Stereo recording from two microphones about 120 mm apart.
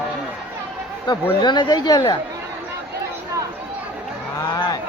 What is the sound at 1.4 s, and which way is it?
Speech, 35° left (ahead or behind).